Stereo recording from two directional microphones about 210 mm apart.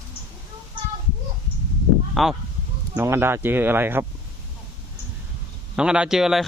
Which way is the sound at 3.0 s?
10° right (ahead or behind).